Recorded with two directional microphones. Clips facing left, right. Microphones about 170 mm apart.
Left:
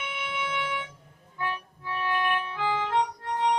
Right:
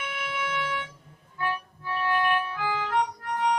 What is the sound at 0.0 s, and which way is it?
Music, 20° left (ahead or behind).